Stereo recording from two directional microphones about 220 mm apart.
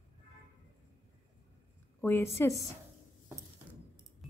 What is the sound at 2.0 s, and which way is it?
Speech, 10° left (ahead or behind).